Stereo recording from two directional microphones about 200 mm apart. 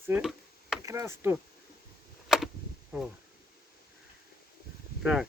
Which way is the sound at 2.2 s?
Centre (ahead or behind).